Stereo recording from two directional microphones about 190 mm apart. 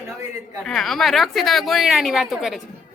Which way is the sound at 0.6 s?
Centre (ahead or behind).